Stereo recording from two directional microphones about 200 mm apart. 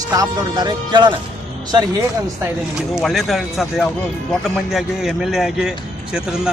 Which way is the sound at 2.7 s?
Centre (ahead or behind).